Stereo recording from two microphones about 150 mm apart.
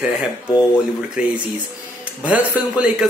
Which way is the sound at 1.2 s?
5° right (ahead or behind).